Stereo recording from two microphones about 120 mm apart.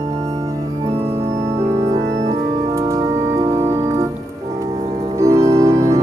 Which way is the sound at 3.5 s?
25° right (ahead or behind).